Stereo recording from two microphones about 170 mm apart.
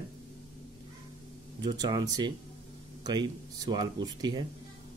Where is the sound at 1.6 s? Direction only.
25° right (ahead or behind).